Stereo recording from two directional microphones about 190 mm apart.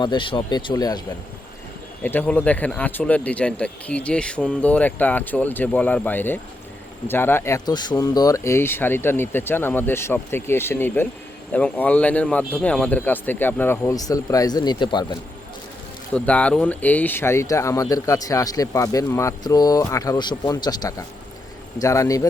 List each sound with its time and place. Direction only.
0.0 s speech: 25° left (ahead or behind)
2.0 s speech: 10° left (ahead or behind)
16.1 s speech: 5° left (ahead or behind)